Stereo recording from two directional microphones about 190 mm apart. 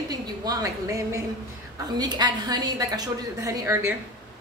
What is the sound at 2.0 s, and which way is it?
A woman's voice, 20° right (ahead or behind).